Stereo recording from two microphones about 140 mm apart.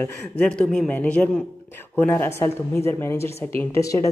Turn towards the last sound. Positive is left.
turn(degrees=20)  # may be behind; listen again after turning